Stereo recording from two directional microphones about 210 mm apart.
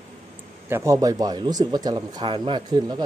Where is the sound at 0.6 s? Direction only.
10° right (ahead or behind).